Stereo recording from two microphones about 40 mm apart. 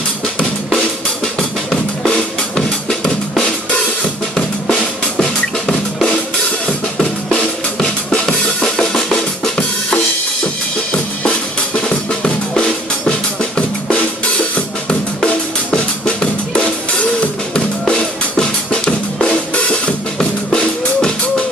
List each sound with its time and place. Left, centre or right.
1.2 s drum: centre
4.4 s music: left
7.2 s drum kit: left
10.9 s drum kit: left
13.4 s drum: left
15.2 s drum: left
17.8 s drum: left
20.2 s music: centre